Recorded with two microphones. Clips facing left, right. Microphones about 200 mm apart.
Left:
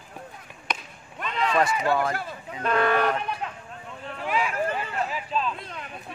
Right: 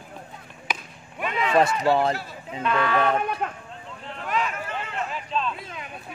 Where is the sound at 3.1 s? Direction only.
50° right (ahead or behind).